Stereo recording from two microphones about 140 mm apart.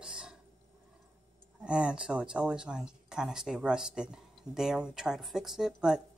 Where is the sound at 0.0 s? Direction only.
5° right (ahead or behind).